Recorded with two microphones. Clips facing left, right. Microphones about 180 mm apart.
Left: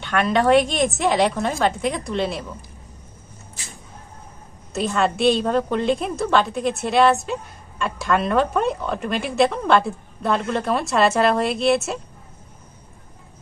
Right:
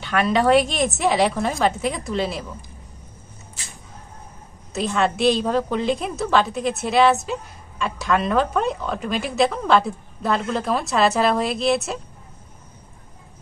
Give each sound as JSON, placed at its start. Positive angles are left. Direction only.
{"t": 0.0, "sound": "speech", "side_deg": 0}
{"t": 4.7, "sound": "speech", "side_deg": 0}